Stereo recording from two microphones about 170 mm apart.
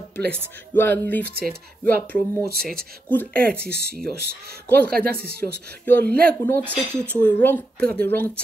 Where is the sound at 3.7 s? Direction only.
65° right (ahead or behind).